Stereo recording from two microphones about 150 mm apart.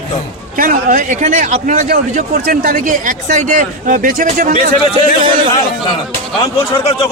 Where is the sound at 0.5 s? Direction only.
65° right (ahead or behind).